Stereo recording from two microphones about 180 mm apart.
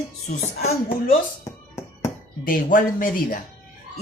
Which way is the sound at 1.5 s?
20° left (ahead or behind).